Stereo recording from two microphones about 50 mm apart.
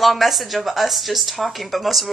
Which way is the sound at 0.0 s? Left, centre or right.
Centre.